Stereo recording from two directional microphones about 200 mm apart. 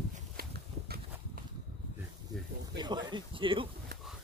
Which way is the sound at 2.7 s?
20° right (ahead or behind).